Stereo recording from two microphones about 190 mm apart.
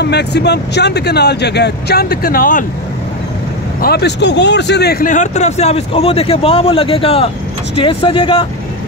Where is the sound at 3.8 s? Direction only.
60° left (ahead or behind).